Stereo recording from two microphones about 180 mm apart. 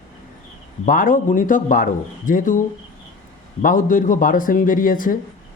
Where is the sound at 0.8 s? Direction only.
50° left (ahead or behind).